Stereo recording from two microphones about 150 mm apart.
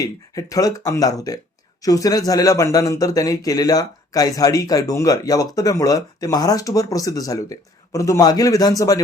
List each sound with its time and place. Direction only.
0.0 s speech: 20° left (ahead or behind)